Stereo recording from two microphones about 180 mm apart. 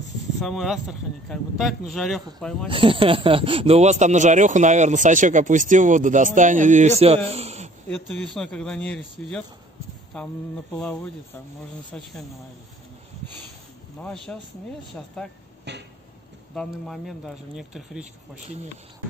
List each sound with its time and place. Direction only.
0.4 s speech: centre (ahead or behind)
2.7 s speech: 30° right (ahead or behind)
7.2 s a sound: 35° right (ahead or behind)
7.9 s speech: centre (ahead or behind)
14.0 s speech: 5° left (ahead or behind)
15.7 s a sound: 70° right (ahead or behind)
16.5 s speech: centre (ahead or behind)